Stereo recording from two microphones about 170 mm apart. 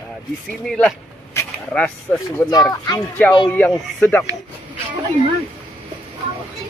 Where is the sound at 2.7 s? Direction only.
25° left (ahead or behind).